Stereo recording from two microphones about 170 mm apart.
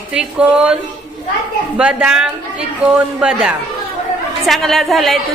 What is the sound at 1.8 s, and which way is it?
A woman's voice, 5° right (ahead or behind).